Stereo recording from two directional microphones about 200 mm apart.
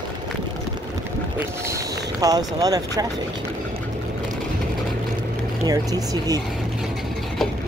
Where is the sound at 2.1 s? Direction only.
20° right (ahead or behind).